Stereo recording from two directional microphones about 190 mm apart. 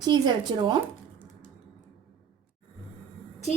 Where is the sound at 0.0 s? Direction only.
25° right (ahead or behind).